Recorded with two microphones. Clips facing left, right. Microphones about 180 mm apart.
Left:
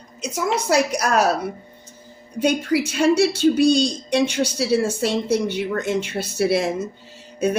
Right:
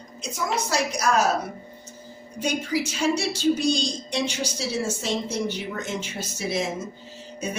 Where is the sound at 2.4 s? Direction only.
60° left (ahead or behind).